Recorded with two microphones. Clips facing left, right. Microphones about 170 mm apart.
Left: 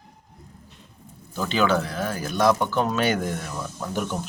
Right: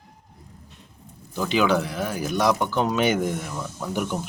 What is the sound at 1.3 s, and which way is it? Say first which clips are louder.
Speech: right 1 dB; 10° right (ahead or behind).